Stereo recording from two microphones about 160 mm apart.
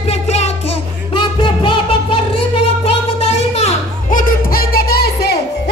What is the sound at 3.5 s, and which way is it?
Children playing, 45° left (ahead or behind).